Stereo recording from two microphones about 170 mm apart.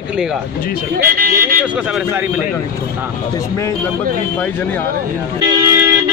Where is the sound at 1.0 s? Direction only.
60° right (ahead or behind).